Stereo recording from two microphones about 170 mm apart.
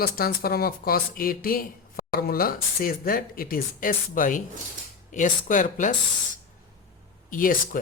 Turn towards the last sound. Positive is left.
turn(degrees=55)  # may be behind; listen again after turning